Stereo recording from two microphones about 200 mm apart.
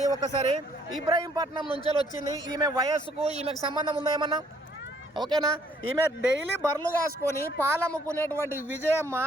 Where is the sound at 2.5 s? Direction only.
20° right (ahead or behind).